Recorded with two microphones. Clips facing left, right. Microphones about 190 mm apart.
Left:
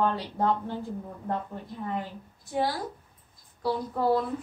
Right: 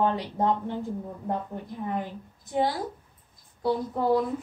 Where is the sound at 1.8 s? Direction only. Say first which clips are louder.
Right 2 dB; 15° right (ahead or behind).